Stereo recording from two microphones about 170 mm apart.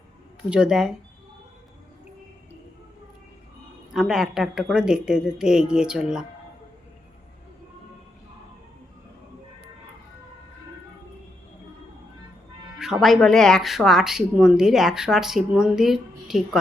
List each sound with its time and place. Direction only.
0.5 s speech: 5° right (ahead or behind)
3.9 s speech: 5° right (ahead or behind)
12.8 s speech: centre (ahead or behind)